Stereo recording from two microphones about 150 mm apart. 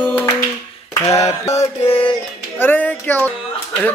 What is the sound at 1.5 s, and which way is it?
Music, 50° left (ahead or behind).